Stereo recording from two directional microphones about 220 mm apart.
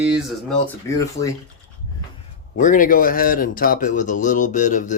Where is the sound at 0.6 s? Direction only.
15° left (ahead or behind).